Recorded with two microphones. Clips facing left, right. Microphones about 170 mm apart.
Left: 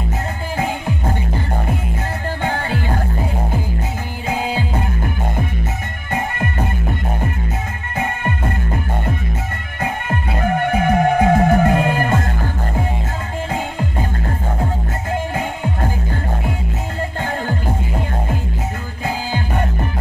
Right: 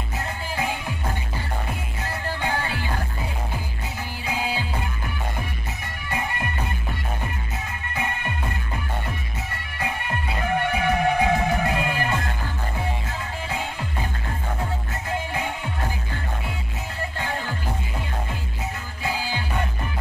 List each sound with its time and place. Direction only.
0.6 s music: 50° left (ahead or behind)
2.4 s music: 50° left (ahead or behind)
4.3 s music: 50° left (ahead or behind)
8.0 s music: 55° left (ahead or behind)
9.8 s music: 50° left (ahead or behind)
15.3 s music: 45° left (ahead or behind)
19.0 s music: 50° left (ahead or behind)